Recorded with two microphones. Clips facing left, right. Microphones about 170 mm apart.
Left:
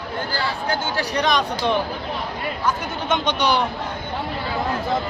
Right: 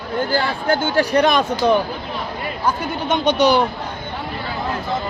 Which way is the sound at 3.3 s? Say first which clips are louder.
Right 8 dB; 40° right (ahead or behind).